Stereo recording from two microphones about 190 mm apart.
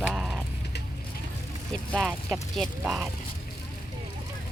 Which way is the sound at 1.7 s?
5° left (ahead or behind).